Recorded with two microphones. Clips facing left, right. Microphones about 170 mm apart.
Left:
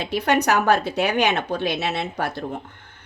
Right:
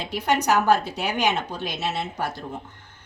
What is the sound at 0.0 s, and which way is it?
A woman's voice, 70° left (ahead or behind).